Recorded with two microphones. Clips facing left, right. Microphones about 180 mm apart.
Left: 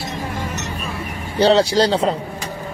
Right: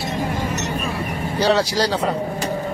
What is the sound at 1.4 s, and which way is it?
Speech, 30° left (ahead or behind).